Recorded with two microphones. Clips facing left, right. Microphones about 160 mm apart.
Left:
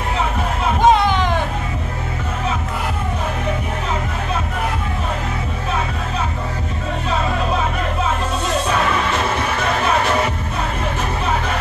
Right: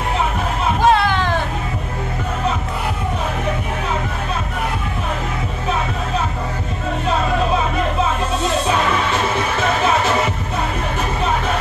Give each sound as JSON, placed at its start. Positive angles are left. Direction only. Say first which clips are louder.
{"t": 0.8, "sound": "music", "louder": "left 2 dB", "side_deg": 20}